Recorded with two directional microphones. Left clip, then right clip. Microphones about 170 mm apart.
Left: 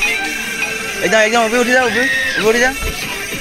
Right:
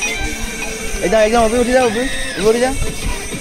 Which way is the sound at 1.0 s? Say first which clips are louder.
Even; 10° right (ahead or behind).